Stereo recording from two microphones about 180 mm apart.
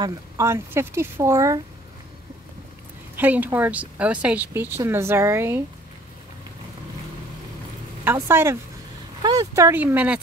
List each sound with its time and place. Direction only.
0.0 s speech: 15° right (ahead or behind)
3.2 s speech: 10° right (ahead or behind)
8.0 s speech: 10° right (ahead or behind)